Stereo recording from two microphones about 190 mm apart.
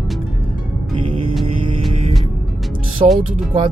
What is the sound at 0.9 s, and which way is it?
Music, 30° right (ahead or behind).